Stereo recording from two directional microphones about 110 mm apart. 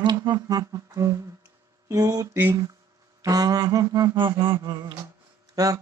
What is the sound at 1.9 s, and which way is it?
Mantra, 35° right (ahead or behind).